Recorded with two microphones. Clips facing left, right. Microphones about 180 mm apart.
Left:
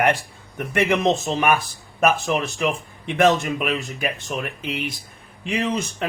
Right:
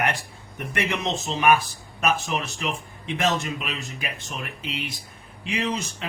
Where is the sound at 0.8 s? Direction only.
55° left (ahead or behind).